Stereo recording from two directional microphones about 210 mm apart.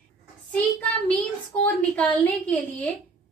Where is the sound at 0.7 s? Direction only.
5° left (ahead or behind).